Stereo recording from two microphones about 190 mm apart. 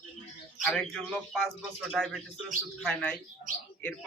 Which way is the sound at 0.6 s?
Centre (ahead or behind).